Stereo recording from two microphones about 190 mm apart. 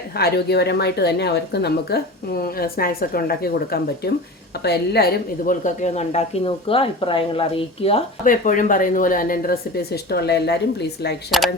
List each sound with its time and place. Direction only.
0.1 s a woman's voice: 55° left (ahead or behind); by 8.0 s 30° left (ahead or behind)
8.2 s speech: 45° left (ahead or behind); by 11.2 s 60° left (ahead or behind)
11.3 s speech: centre (ahead or behind)